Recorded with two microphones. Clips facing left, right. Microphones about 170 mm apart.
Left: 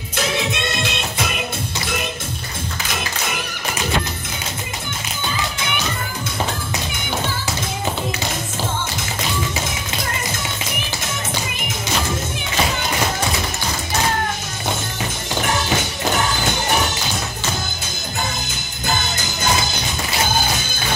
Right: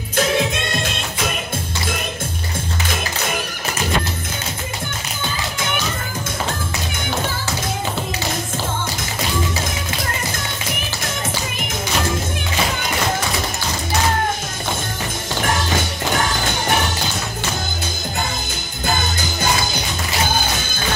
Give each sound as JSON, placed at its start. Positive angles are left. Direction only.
{"t": 0.1, "sound": "music", "side_deg": -50}